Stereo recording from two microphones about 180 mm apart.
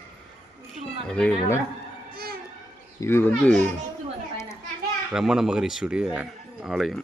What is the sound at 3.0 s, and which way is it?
Speech, 15° left (ahead or behind).